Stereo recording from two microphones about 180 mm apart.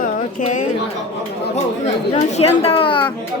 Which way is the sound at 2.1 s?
35° left (ahead or behind).